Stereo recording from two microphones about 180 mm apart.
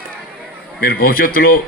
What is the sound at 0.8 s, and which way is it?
Speech, 55° left (ahead or behind).